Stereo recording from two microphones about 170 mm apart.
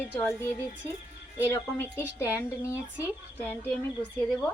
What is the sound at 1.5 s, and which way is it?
Speech, 15° left (ahead or behind).